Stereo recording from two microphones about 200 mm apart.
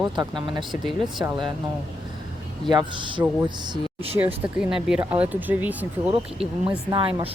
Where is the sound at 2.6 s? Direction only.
20° right (ahead or behind).